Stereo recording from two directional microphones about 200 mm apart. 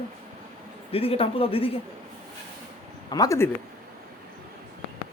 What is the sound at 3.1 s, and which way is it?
Speech, 20° left (ahead or behind).